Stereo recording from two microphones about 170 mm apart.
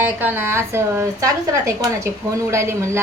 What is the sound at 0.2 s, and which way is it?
A woman's voice, 10° right (ahead or behind).